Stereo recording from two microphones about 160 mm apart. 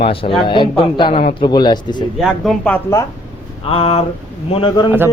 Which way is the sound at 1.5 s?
30° left (ahead or behind).